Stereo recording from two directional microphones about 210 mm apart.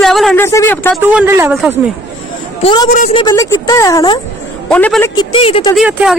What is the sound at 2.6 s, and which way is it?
Speech, 20° left (ahead or behind).